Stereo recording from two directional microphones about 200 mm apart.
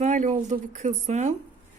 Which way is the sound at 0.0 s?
35° right (ahead or behind).